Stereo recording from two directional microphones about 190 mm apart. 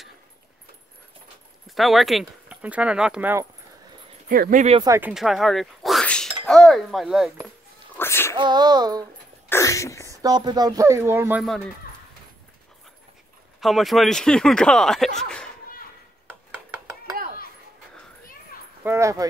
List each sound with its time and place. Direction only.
1.8 s speech: centre (ahead or behind)
4.3 s speech: 50° right (ahead or behind)
4.8 s speech: 15° right (ahead or behind)
5.1 s speech: centre (ahead or behind)
7.9 s a sound: 10° left (ahead or behind)
8.4 s a sound: 20° right (ahead or behind)
9.5 s sneeze: 15° left (ahead or behind)
10.1 s speech: 20° right (ahead or behind)
13.6 s speech: centre (ahead or behind)
15.1 s a sound: 5° left (ahead or behind)
18.9 s speech: 15° right (ahead or behind)